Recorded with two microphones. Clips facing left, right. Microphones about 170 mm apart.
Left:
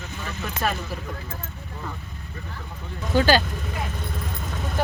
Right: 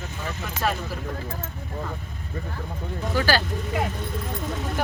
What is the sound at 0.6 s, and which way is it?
Speech, 10° left (ahead or behind).